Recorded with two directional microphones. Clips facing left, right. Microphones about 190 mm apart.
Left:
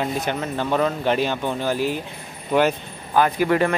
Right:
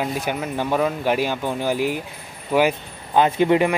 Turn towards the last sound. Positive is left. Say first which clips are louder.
# right 2 dB
turn(degrees=-15)  # may be behind; listen again after turning